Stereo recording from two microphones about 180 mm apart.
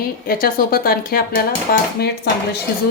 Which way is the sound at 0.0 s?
55° left (ahead or behind).